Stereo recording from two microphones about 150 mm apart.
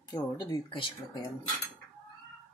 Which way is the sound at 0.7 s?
35° left (ahead or behind).